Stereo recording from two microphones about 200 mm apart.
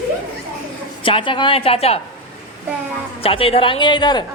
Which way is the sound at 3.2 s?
30° left (ahead or behind).